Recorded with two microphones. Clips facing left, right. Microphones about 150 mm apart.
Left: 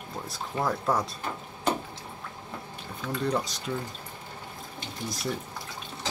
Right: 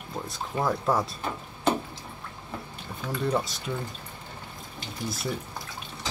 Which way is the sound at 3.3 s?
5° right (ahead or behind).